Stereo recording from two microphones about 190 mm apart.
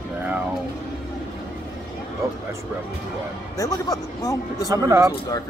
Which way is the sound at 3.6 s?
20° left (ahead or behind).